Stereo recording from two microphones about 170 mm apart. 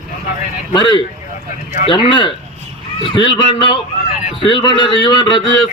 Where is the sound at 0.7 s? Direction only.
25° left (ahead or behind).